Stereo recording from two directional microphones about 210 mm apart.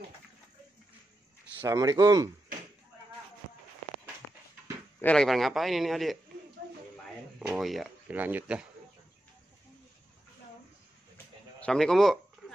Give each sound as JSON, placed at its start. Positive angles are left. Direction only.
{"t": 1.6, "sound": "speech", "side_deg": -15}
{"t": 5.0, "sound": "a man's voice", "side_deg": 5}
{"t": 11.6, "sound": "a sound", "side_deg": 0}